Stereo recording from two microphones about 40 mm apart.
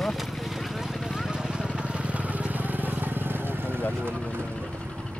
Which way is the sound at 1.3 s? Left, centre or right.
Right.